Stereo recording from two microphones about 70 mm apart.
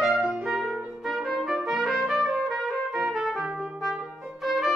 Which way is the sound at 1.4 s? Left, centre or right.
Centre.